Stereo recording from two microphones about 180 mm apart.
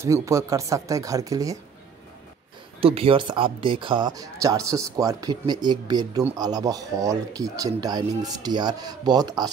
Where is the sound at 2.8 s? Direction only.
30° right (ahead or behind).